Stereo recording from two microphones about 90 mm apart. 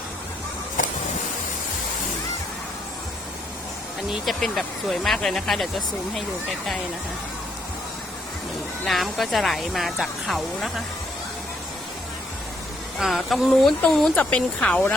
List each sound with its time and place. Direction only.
4.1 s speech: centre (ahead or behind)
8.8 s speech: centre (ahead or behind)
13.0 s speech: centre (ahead or behind); by 14.9 s 15° left (ahead or behind)